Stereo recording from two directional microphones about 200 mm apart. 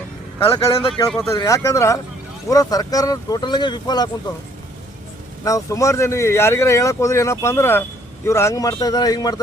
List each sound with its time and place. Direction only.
0.3 s speech: 30° left (ahead or behind)
1.1 s speech: 10° left (ahead or behind)
5.5 s speech: 15° left (ahead or behind)